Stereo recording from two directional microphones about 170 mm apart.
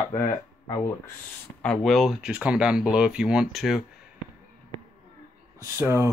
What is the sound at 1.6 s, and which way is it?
Speech, centre (ahead or behind).